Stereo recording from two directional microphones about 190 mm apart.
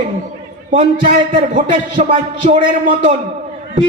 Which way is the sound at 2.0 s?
40° right (ahead or behind).